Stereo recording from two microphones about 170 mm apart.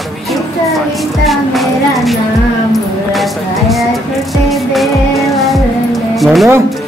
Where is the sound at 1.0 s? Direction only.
Centre (ahead or behind).